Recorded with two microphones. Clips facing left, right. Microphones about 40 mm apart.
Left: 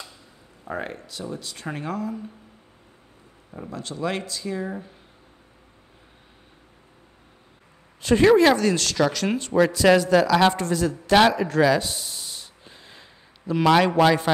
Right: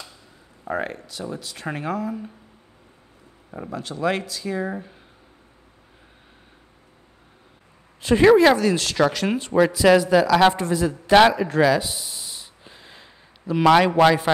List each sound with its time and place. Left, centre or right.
0.7 s speech: centre
3.7 s speech: centre
8.0 s speech: centre
11.7 s a sound: centre
14.0 s speech: centre